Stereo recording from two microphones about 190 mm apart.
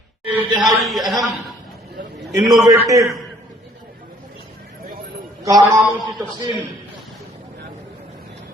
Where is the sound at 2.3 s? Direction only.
20° right (ahead or behind).